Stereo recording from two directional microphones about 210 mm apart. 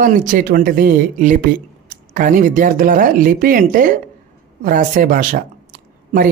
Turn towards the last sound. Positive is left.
turn(degrees=-40)  # may be behind; listen again after turning